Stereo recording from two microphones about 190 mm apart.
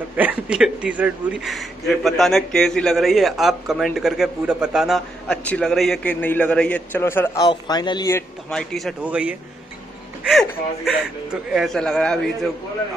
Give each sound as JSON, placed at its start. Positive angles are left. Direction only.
{"t": 0.1, "sound": "a man's voice", "side_deg": -10}
{"t": 8.5, "sound": "a man's voice", "side_deg": 0}
{"t": 10.9, "sound": "a man's voice", "side_deg": -5}